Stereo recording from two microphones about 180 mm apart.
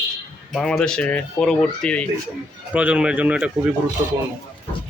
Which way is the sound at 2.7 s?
5° right (ahead or behind).